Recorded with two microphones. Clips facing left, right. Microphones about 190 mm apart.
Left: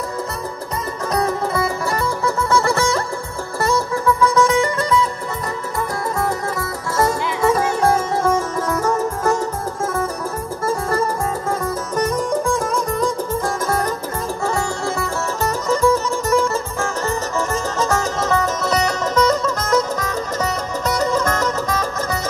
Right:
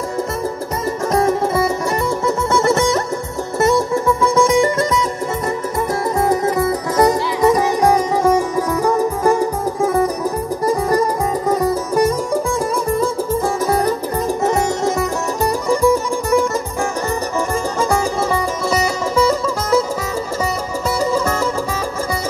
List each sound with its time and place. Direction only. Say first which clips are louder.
1.1 s music: right 4 dB; 25° right (ahead or behind)
6.1 s music: right 8 dB; 20° right (ahead or behind)
17.7 s music: right 3 dB; 15° right (ahead or behind)
21.0 s music: right 2 dB; 10° right (ahead or behind)